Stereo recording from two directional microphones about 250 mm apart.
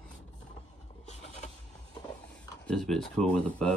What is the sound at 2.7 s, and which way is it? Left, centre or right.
Speech, centre.